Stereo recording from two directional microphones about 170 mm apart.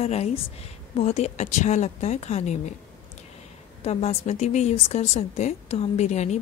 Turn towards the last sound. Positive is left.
turn(degrees=40)  # may be behind; listen again after turning